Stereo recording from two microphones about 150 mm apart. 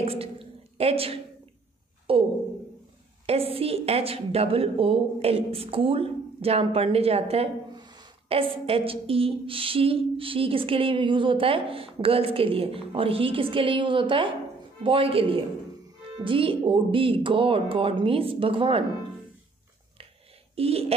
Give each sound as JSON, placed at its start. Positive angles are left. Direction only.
{"t": 0.0, "sound": "a sound", "side_deg": -40}
{"t": 3.3, "sound": "a woman's voice", "side_deg": -40}
{"t": 7.7, "sound": "a woman's voice", "side_deg": -30}
{"t": 20.5, "sound": "speech", "side_deg": -40}